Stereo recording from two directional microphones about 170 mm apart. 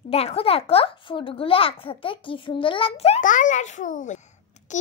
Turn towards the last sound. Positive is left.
turn(degrees=45)  # may be behind; listen again after turning